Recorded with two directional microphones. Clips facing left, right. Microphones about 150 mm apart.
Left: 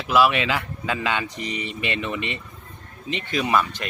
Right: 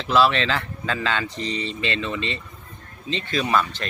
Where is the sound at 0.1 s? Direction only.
10° left (ahead or behind).